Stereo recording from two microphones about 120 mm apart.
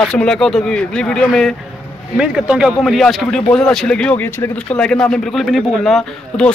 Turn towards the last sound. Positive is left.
turn(degrees=5)  # may be behind; listen again after turning